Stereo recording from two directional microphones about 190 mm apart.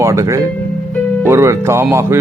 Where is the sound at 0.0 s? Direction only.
15° right (ahead or behind).